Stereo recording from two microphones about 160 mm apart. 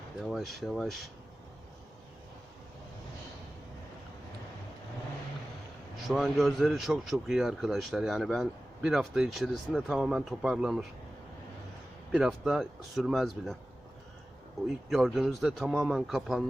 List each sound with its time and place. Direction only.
0.2 s speech: centre (ahead or behind)
6.1 s speech: centre (ahead or behind)
12.1 s speech: centre (ahead or behind)
14.8 s speech: centre (ahead or behind)